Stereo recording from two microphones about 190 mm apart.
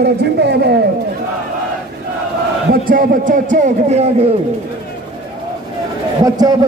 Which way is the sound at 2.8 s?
50° right (ahead or behind).